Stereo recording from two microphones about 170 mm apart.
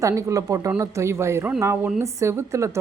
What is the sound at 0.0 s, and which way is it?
Speech, 20° right (ahead or behind).